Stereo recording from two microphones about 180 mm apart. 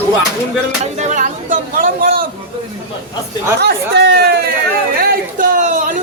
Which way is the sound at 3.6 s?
65° right (ahead or behind).